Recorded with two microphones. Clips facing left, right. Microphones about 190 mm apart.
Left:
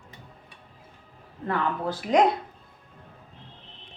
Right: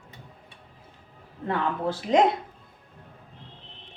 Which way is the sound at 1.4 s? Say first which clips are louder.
Right 1 dB; 25° right (ahead or behind).